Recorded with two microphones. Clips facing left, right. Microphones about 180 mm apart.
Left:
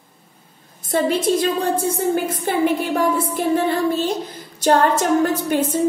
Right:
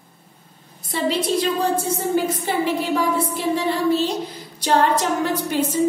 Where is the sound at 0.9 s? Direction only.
50° left (ahead or behind).